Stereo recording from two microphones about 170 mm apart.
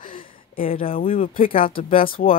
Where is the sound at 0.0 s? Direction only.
55° left (ahead or behind).